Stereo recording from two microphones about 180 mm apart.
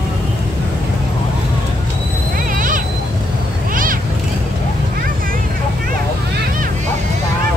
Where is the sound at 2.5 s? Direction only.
50° right (ahead or behind).